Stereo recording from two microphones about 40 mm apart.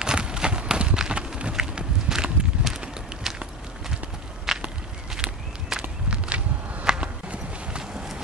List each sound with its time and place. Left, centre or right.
0.0 s a sound: right
3.3 s walk: centre
4.5 s walk: centre
5.1 s walk: centre